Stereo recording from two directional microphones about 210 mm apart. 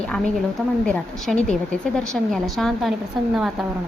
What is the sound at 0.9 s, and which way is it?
A woman's voice, 5° left (ahead or behind).